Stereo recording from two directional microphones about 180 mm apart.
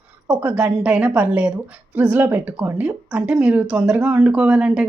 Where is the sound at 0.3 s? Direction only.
5° right (ahead or behind).